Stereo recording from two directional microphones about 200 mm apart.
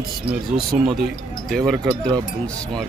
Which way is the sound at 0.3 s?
Centre (ahead or behind).